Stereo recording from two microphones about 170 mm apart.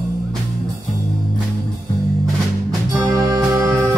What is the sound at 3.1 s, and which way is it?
Music, 20° right (ahead or behind).